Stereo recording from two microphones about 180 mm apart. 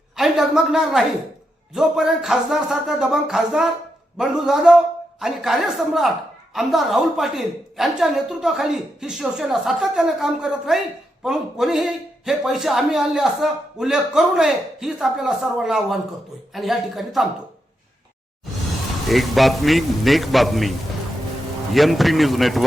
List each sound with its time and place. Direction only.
0.2 s a woman's voice: centre (ahead or behind)
19.0 s a woman's voice: centre (ahead or behind)